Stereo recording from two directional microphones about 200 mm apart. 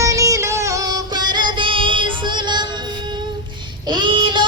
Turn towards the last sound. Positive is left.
turn(degrees=-25)  # may be behind; listen again after turning